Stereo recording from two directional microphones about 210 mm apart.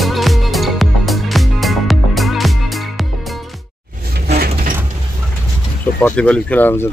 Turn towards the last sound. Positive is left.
turn(degrees=10)  # may be behind; listen again after turning